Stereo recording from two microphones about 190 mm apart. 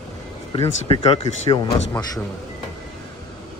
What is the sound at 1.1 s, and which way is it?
Speech, 25° left (ahead or behind).